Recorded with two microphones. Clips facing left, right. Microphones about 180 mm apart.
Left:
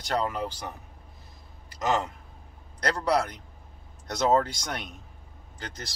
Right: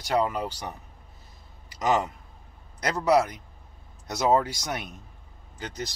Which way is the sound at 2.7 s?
5° right (ahead or behind).